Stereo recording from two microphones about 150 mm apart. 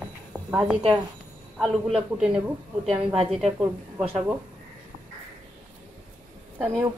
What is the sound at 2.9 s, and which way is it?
Speech, 40° right (ahead or behind).